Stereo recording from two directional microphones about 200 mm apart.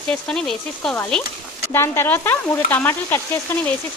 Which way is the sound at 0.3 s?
5° left (ahead or behind).